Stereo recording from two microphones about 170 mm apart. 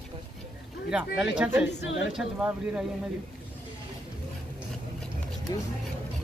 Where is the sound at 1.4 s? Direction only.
10° right (ahead or behind).